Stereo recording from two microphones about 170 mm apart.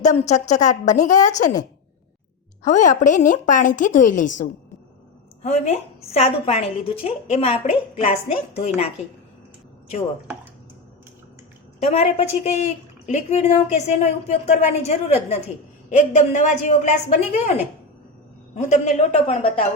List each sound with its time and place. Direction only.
0.0 s a woman's voice: 45° left (ahead or behind)
2.6 s a woman's voice: 45° left (ahead or behind)
11.8 s a woman's voice: 40° left (ahead or behind)
18.5 s a woman's voice: 45° left (ahead or behind)